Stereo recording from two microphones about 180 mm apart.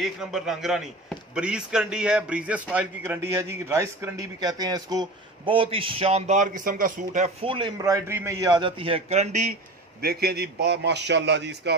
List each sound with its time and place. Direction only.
0.0 s a man's voice: centre (ahead or behind); by 7.3 s 45° right (ahead or behind)
7.4 s a man's voice: 30° right (ahead or behind)
10.0 s a man's voice: 60° right (ahead or behind)